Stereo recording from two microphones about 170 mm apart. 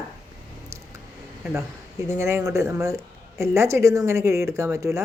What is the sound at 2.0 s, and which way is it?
Speech, 15° right (ahead or behind).